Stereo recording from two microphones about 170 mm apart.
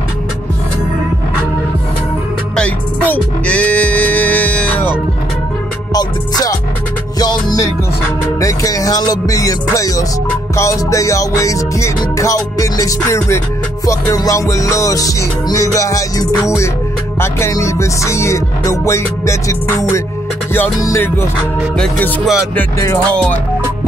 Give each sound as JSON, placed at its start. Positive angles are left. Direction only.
{"t": 2.5, "sound": "music", "side_deg": 5}
{"t": 5.9, "sound": "music", "side_deg": 25}
{"t": 21.7, "sound": "music", "side_deg": 5}